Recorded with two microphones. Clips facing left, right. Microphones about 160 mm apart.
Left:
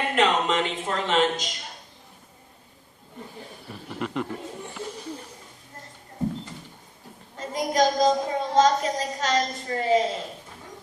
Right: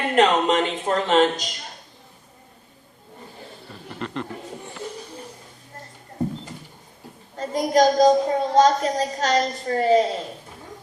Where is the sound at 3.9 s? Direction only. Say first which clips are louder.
Left 1 dB; 5° left (ahead or behind).